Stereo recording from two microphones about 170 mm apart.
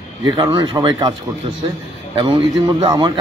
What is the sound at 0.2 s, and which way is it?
Speech, 25° right (ahead or behind).